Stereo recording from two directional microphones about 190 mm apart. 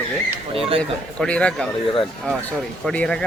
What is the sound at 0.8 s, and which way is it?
Speech, 5° left (ahead or behind).